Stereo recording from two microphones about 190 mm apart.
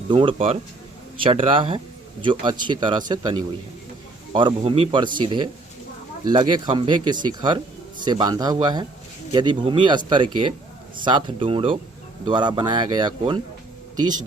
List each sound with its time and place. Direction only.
0.1 s speech: 25° right (ahead or behind)